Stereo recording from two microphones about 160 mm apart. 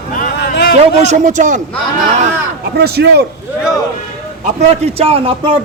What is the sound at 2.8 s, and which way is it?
Speech, 85° right.